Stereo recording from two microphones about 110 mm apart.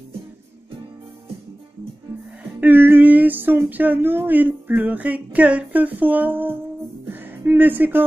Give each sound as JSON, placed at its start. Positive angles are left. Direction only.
{"t": 2.6, "sound": "speech", "side_deg": -20}
{"t": 7.1, "sound": "music", "side_deg": -20}